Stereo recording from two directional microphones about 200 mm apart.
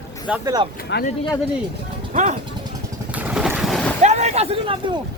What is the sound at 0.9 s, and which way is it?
Speech, 60° left (ahead or behind).